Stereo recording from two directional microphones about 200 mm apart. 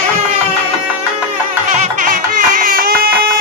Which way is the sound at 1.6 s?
40° right (ahead or behind).